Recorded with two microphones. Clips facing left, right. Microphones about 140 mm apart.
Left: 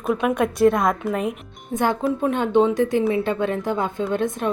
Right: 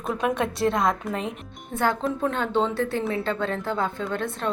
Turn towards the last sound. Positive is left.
turn(degrees=20)  # may be behind; listen again after turning